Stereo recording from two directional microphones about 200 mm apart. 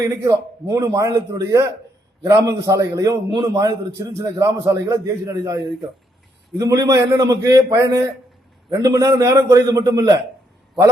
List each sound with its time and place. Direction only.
0.0 s a man's voice: 15° right (ahead or behind)